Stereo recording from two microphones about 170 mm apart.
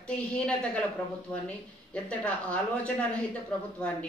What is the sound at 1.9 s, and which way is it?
Speech, 10° left (ahead or behind).